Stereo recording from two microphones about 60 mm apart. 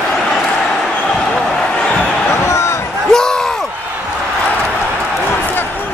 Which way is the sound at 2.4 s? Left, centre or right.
Left.